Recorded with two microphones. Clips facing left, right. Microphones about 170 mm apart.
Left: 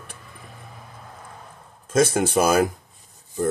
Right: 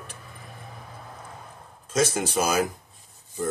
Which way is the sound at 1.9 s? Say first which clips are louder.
Left 5 dB; 55° left (ahead or behind).